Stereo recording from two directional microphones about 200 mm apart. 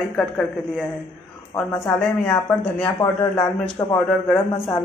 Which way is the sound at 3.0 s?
20° left (ahead or behind).